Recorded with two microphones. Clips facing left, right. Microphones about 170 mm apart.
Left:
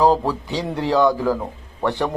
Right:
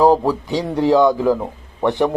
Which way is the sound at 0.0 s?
15° right (ahead or behind).